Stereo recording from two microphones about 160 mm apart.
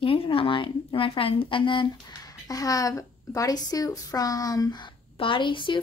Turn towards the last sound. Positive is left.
turn(degrees=30)  # may be behind; listen again after turning